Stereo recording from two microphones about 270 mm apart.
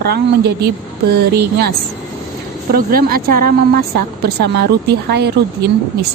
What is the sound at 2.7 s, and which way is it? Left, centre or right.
A woman's voice, right.